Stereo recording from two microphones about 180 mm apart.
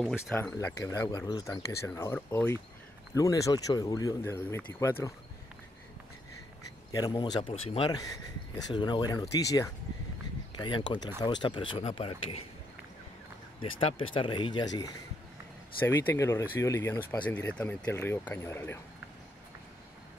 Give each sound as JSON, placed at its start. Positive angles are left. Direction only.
{"t": 0.0, "sound": "speech", "side_deg": 0}
{"t": 0.4, "sound": "speech", "side_deg": 10}
{"t": 6.9, "sound": "speech", "side_deg": 20}
{"t": 13.6, "sound": "speech", "side_deg": 30}